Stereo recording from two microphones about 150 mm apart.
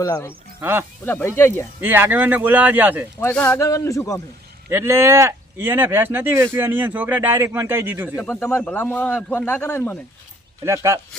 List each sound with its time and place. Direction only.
0.0 s a man's voice: 20° left (ahead or behind)
0.6 s speech: 15° right (ahead or behind)
1.0 s speech: 15° left (ahead or behind)
1.8 s speech: 15° right (ahead or behind)
3.3 s speech: 5° left (ahead or behind)
3.6 s a man's voice: 20° left (ahead or behind)
4.7 s speech: 15° right (ahead or behind)
8.2 s speech: 15° left (ahead or behind)
10.6 s speech: 20° right (ahead or behind)